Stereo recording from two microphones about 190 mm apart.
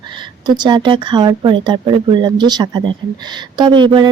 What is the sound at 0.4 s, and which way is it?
A woman's voice, 25° right (ahead or behind).